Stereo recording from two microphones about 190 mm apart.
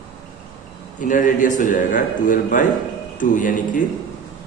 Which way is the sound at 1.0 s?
45° left (ahead or behind).